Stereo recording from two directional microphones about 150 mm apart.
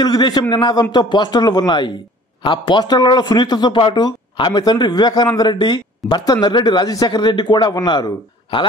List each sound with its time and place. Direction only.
0.0 s a man's voice: 30° left (ahead or behind)